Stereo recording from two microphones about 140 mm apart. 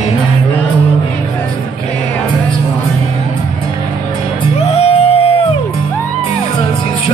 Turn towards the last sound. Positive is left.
turn(degrees=45)  # may be behind; listen again after turning